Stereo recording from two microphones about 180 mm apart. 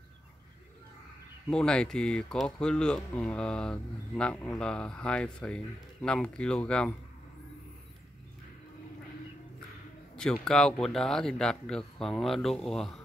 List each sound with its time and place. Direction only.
1.5 s speech: 5° left (ahead or behind)
10.4 s speech: 5° left (ahead or behind)